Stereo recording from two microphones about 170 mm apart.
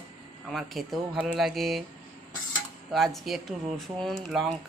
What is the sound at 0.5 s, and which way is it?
Speech, centre (ahead or behind).